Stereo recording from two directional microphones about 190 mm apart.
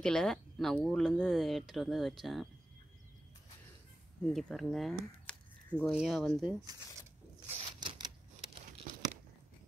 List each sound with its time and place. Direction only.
0.0 s speech: 5° left (ahead or behind)
4.2 s speech: centre (ahead or behind)
7.4 s typewriter: 35° right (ahead or behind)